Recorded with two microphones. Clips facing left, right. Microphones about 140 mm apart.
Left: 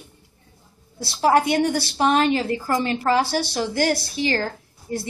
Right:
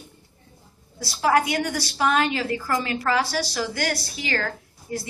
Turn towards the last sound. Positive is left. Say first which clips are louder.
# left 3 dB
turn(degrees=30)  # may be behind; listen again after turning